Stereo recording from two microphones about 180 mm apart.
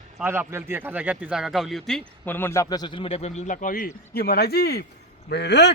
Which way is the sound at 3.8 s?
60° left (ahead or behind).